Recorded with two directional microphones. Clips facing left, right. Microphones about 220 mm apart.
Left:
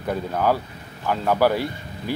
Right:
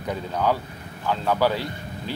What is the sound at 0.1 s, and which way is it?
Speech, 10° left (ahead or behind).